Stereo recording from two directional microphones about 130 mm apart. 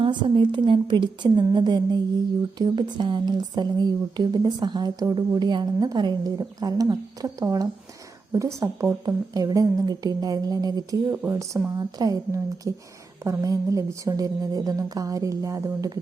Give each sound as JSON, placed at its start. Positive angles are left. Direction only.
{"t": 0.0, "sound": "speech", "side_deg": -40}